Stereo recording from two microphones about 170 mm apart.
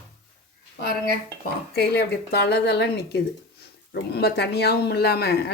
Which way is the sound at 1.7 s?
75° left (ahead or behind).